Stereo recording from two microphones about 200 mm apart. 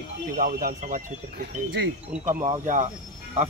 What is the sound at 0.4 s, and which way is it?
Speech, 45° right (ahead or behind).